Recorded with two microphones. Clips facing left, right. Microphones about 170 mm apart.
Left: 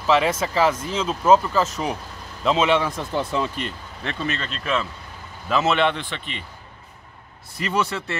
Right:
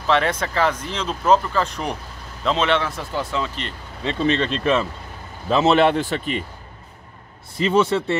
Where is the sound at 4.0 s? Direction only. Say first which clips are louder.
Right 7 dB; 20° right (ahead or behind).